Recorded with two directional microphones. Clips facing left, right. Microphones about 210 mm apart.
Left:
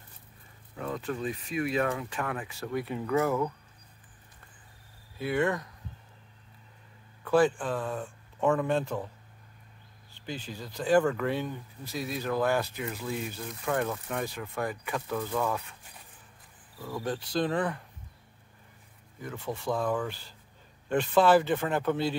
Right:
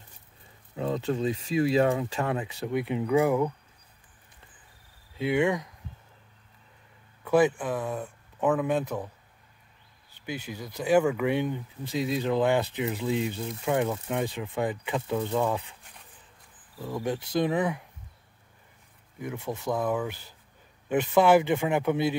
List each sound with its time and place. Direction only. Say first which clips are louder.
0.7 s speech: right 5 dB; 25° right (ahead or behind)
5.1 s speech: right 3 dB; 20° right (ahead or behind)
7.2 s speech: right 2 dB; 10° right (ahead or behind)
8.7 s speech: right 1 dB; 20° right (ahead or behind)
10.2 s speech: right 3 dB; 10° right (ahead or behind)
16.7 s speech: right 3 dB; 15° right (ahead or behind)
19.1 s speech: right 3 dB; 10° right (ahead or behind)